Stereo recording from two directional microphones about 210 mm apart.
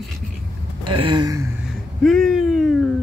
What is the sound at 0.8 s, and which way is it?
Speech, 25° right (ahead or behind).